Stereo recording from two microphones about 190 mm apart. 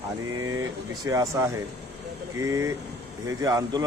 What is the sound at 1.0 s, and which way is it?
A man's voice, 15° right (ahead or behind).